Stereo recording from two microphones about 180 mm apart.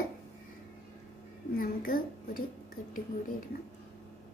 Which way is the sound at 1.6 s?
55° left (ahead or behind).